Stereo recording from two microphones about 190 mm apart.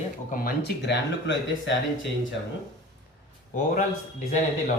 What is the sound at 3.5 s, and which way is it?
Speech, 40° left (ahead or behind).